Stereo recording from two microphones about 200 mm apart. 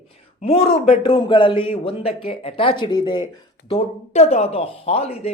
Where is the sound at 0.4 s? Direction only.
25° left (ahead or behind).